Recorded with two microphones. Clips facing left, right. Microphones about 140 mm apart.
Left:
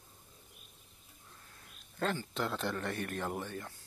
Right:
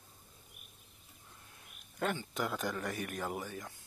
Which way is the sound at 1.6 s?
10° right (ahead or behind).